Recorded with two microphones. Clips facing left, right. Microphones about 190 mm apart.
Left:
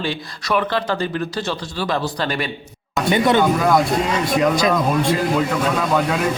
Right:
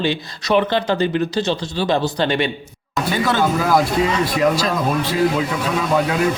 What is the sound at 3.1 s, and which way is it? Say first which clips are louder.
Speech: left 4 dB; 20° left (ahead or behind).